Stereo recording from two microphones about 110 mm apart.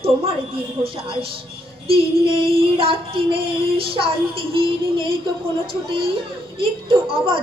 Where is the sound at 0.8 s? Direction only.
60° right (ahead or behind).